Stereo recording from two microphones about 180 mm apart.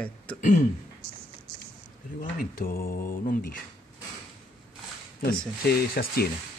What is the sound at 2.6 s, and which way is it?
Speech, 55° left (ahead or behind).